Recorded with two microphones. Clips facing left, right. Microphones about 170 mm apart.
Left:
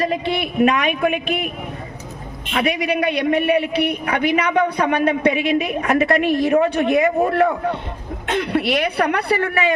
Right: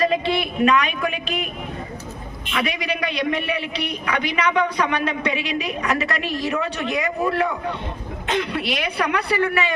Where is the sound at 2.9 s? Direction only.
55° left (ahead or behind).